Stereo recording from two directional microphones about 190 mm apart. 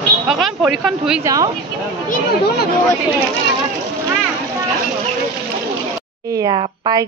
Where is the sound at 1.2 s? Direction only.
20° right (ahead or behind).